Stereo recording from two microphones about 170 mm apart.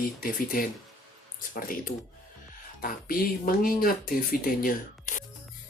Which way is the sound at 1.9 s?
70° left (ahead or behind).